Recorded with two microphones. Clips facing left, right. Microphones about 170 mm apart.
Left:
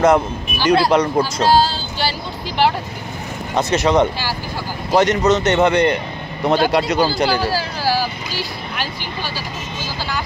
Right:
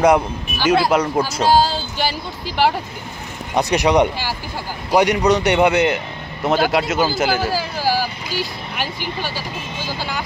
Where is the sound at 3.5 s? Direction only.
15° right (ahead or behind).